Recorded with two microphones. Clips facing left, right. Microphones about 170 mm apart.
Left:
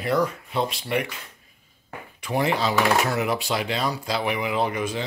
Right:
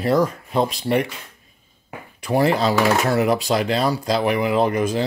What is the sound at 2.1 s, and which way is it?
Speech, 40° right (ahead or behind).